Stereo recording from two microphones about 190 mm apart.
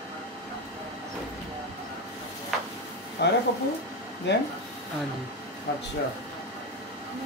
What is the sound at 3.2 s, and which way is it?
Speech, 65° left (ahead or behind).